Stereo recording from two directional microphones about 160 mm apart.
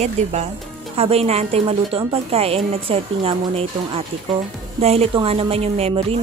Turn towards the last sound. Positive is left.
turn(degrees=-40)  # may be behind; listen again after turning